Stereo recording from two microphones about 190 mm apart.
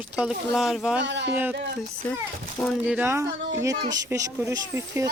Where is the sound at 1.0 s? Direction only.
70° right (ahead or behind).